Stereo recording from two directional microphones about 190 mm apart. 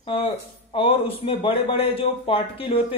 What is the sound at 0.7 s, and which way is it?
Speech, 30° left (ahead or behind).